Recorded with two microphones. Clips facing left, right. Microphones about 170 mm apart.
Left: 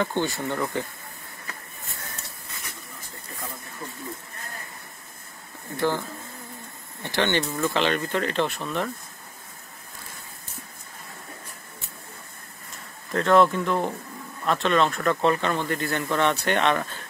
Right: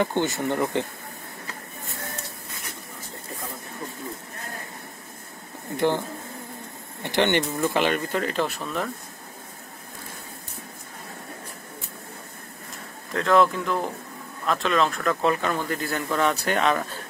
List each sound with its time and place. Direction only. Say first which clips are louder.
0.0 s speech: right 2 dB; 15° right (ahead or behind)
5.8 s speech: right 2 dB; 20° right (ahead or behind); by 8.9 s centre (ahead or behind)
13.1 s speech: left 1 dB; centre (ahead or behind)